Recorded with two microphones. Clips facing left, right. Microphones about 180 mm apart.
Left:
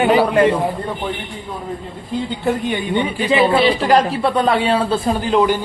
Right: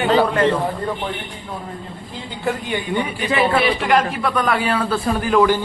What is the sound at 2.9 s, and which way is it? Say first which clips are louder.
Speech: left 4 dB; 25° left (ahead or behind).